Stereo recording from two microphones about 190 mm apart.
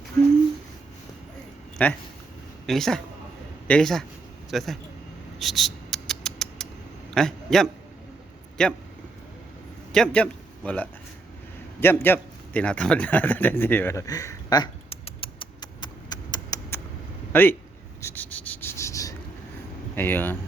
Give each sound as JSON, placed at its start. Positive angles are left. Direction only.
{"t": 1.8, "sound": "speech", "side_deg": 10}
{"t": 5.4, "sound": "rodents", "side_deg": 0}
{"t": 7.1, "sound": "a man's voice", "side_deg": 0}
{"t": 9.9, "sound": "a man's voice", "side_deg": 5}
{"t": 11.8, "sound": "a sound", "side_deg": 10}
{"t": 17.3, "sound": "speech", "side_deg": 10}
{"t": 18.0, "sound": "a sound", "side_deg": 10}
{"t": 20.0, "sound": "speech", "side_deg": 10}